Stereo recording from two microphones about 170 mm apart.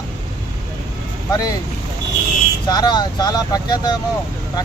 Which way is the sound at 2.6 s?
25° left (ahead or behind).